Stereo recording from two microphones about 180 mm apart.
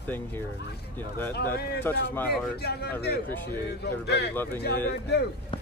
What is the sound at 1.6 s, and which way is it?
Speech, 60° left (ahead or behind).